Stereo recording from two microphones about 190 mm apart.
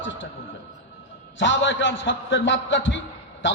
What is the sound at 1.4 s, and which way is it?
A man's voice, 75° left (ahead or behind).